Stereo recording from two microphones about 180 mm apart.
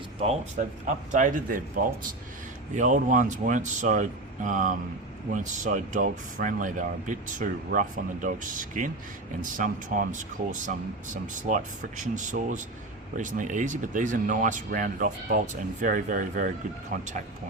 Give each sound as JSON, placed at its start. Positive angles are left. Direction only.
{"t": 0.2, "sound": "speech", "side_deg": -35}